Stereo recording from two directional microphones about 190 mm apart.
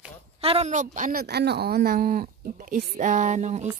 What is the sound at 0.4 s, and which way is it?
Speech, 30° right (ahead or behind).